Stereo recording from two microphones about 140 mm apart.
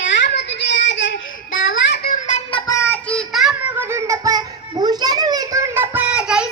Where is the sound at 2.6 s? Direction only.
20° left (ahead or behind).